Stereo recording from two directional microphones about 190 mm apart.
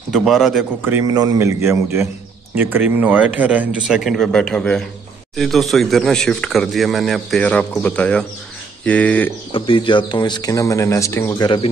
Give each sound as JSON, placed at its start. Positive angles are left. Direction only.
{"t": 0.1, "sound": "a man's voice", "side_deg": 0}
{"t": 9.5, "sound": "speech", "side_deg": 25}
{"t": 11.4, "sound": "speech", "side_deg": 25}